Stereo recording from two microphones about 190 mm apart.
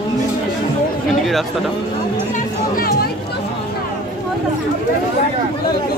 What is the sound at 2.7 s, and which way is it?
Speech, 50° left (ahead or behind).